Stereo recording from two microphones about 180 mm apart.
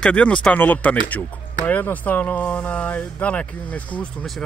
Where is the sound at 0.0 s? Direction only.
5° left (ahead or behind).